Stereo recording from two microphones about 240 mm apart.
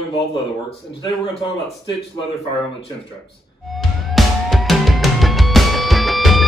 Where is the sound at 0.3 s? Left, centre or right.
Left.